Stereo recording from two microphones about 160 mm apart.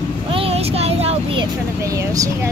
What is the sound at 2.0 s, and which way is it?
Speech, 20° right (ahead or behind).